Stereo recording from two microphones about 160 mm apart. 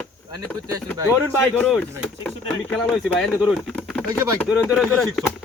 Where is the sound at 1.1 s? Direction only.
10° left (ahead or behind).